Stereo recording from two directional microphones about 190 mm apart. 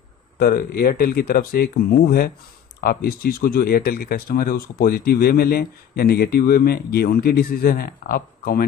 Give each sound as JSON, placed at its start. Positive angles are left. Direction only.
{"t": 0.4, "sound": "speech", "side_deg": 50}